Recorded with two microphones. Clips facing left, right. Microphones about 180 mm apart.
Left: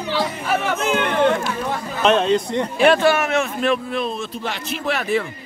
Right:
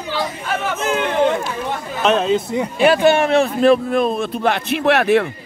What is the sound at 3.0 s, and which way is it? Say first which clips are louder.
A man's voice: right 4 dB; 25° right (ahead or behind).